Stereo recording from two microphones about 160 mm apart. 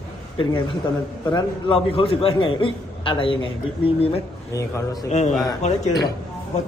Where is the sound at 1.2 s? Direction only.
30° left (ahead or behind).